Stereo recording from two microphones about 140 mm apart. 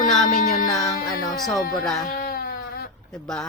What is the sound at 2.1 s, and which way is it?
Baby cry, 90° left.